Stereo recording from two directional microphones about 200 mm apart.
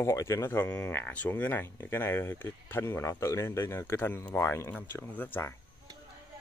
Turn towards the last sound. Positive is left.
turn(degrees=10)  # may be behind; listen again after turning